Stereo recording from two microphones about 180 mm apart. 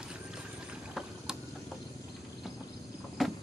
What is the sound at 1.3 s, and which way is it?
Vehicle, 5° right (ahead or behind).